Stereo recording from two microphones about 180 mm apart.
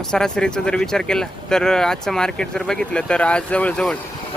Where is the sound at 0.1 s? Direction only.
5° left (ahead or behind).